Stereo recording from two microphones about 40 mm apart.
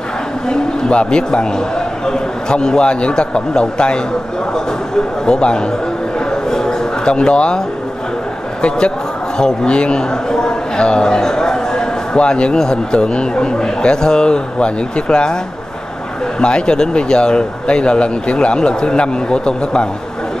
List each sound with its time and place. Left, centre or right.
0.5 s speech: left
5.2 s speech: left
6.3 s a sound: centre
8.6 s speech: left
10.3 s a sound: centre
12.2 s speech: left
16.3 s speech: left